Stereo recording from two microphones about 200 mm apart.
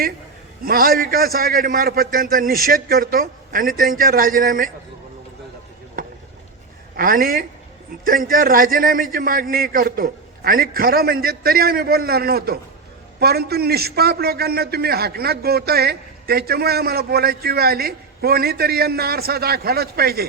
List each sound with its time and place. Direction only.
0.6 s a man's voice: 45° right (ahead or behind)
6.9 s a man's voice: 45° right (ahead or behind)